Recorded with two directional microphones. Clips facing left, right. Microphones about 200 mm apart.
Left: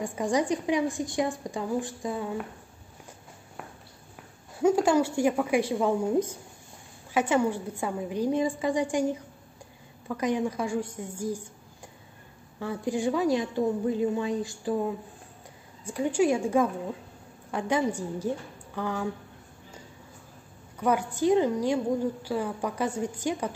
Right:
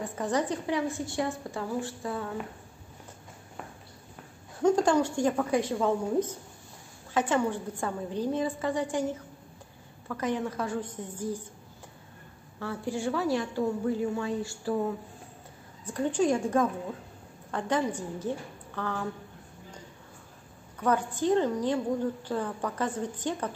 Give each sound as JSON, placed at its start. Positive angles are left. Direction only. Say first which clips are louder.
{"t": 0.0, "sound": "a woman's voice", "louder": "left 3 dB", "side_deg": 10}
{"t": 4.6, "sound": "a woman's voice", "louder": "left 1 dB", "side_deg": 10}
{"t": 12.5, "sound": "a woman's voice", "louder": "left 3 dB", "side_deg": 15}
{"t": 15.8, "sound": "a woman's voice", "louder": "left 2 dB", "side_deg": 10}
{"t": 20.8, "sound": "a woman's voice", "louder": "left 2 dB", "side_deg": 10}